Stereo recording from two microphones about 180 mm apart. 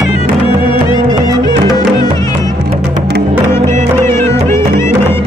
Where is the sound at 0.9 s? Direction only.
20° left (ahead or behind).